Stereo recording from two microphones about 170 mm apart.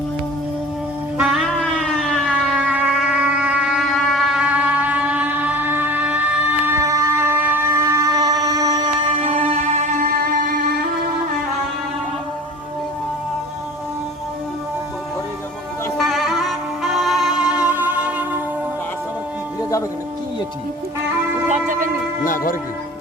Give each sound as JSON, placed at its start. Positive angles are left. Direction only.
{"t": 1.2, "sound": "siren", "side_deg": 0}
{"t": 9.2, "sound": "music", "side_deg": -35}
{"t": 16.0, "sound": "music", "side_deg": 0}
{"t": 21.5, "sound": "music", "side_deg": -50}
{"t": 22.2, "sound": "music", "side_deg": 50}